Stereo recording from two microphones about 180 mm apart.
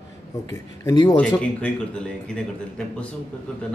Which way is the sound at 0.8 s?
20° left (ahead or behind).